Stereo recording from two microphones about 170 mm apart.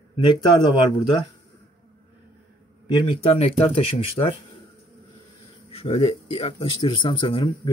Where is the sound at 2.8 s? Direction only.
35° left (ahead or behind).